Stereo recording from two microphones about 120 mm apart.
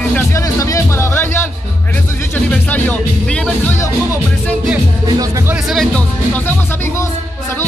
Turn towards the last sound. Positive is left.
turn(degrees=0)  # may be behind; listen again after turning